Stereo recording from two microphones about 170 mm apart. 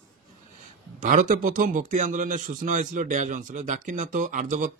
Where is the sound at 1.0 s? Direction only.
50° right (ahead or behind).